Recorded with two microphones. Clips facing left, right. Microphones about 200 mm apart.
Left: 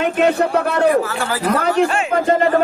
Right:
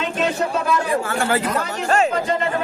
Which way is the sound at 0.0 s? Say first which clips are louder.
Left 6 dB; 60° left (ahead or behind).